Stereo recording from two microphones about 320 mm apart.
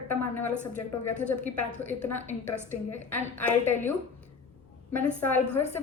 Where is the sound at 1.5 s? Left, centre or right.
Centre.